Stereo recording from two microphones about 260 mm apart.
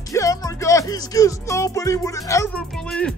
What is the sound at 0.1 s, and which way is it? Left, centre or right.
Speech, centre.